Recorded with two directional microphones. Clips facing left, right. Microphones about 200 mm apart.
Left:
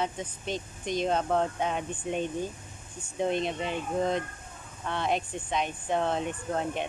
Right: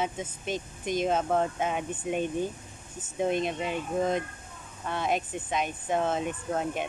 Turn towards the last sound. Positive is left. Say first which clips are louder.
# right 1 dB
turn(degrees=-5)  # may be behind; listen again after turning